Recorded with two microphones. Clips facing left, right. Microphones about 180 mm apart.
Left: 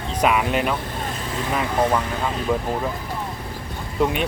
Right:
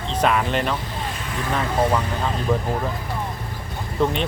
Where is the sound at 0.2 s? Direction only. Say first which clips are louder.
Left 1 dB; 10° left (ahead or behind).